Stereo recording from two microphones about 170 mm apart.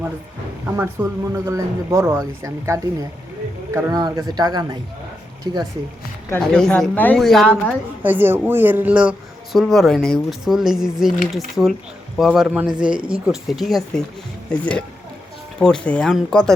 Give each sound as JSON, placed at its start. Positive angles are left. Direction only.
{"t": 0.8, "sound": "speech", "side_deg": -15}
{"t": 6.3, "sound": "speech", "side_deg": 5}
{"t": 8.0, "sound": "speech", "side_deg": -10}